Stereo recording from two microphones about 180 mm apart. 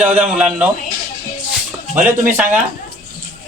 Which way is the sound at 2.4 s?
10° right (ahead or behind).